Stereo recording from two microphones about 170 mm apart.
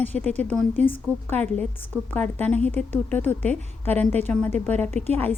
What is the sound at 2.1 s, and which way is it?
A woman's voice, 10° left (ahead or behind).